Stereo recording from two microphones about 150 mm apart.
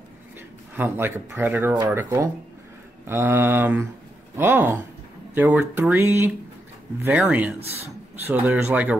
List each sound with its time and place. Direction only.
0.7 s speech: 15° right (ahead or behind)
7.6 s speech: 45° right (ahead or behind)
8.2 s speech: 15° right (ahead or behind)